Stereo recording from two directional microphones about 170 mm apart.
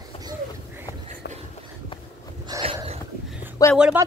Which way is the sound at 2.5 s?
20° right (ahead or behind).